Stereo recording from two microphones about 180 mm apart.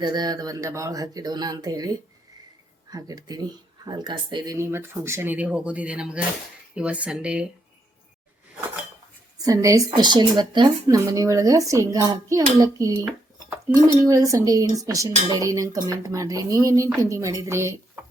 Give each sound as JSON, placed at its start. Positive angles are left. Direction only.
{"t": 0.0, "sound": "speech", "side_deg": -25}
{"t": 9.4, "sound": "speech", "side_deg": -20}